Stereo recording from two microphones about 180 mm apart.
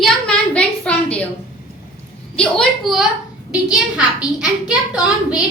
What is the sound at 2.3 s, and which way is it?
A woman's voice, centre (ahead or behind).